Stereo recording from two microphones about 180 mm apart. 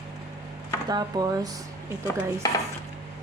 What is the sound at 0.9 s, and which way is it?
Stir, 20° right (ahead or behind).